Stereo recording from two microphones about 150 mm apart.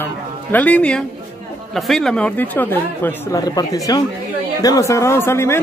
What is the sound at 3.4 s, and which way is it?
Speech, 25° left (ahead or behind).